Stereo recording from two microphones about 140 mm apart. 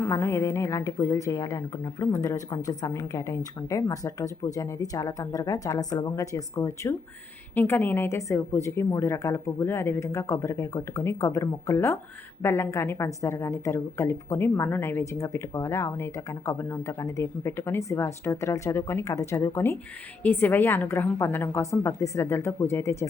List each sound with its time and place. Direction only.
0.0 s a woman's voice: 20° left (ahead or behind)